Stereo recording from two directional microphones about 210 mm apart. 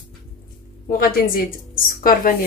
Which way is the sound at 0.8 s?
45° left (ahead or behind).